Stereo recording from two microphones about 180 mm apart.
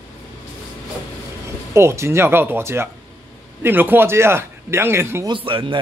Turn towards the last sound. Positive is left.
turn(degrees=-30)  # may be behind; listen again after turning